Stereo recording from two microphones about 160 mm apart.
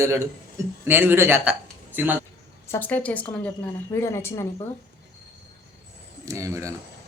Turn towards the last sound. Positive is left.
turn(degrees=-20)  # may be behind; listen again after turning